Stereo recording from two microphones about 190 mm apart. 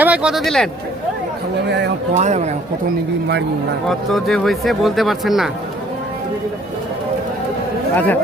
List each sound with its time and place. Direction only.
0.0 s speech: 5° right (ahead or behind)
2.1 s speech: 35° right (ahead or behind)
3.8 s speech: centre (ahead or behind)
7.9 s speech: 10° left (ahead or behind)